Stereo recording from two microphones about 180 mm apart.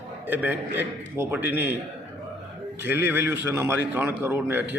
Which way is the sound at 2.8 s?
10° right (ahead or behind).